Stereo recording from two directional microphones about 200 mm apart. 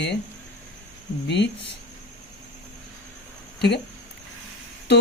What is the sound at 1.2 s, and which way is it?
Speech, 60° left (ahead or behind).